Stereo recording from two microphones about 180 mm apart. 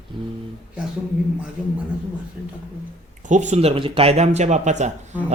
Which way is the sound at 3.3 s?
40° right (ahead or behind).